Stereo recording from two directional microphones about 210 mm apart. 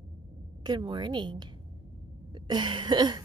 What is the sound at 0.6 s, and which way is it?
A woman's voice, 20° right (ahead or behind).